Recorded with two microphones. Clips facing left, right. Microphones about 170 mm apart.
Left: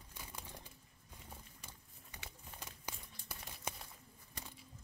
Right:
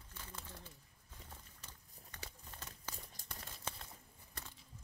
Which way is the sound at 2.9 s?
40° right (ahead or behind).